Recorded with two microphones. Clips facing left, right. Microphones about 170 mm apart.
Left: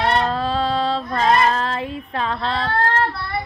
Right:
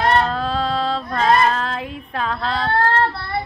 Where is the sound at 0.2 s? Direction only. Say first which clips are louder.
Even; centre (ahead or behind).